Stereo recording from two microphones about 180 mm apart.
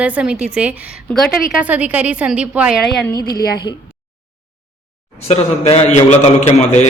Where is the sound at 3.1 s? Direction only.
20° left (ahead or behind).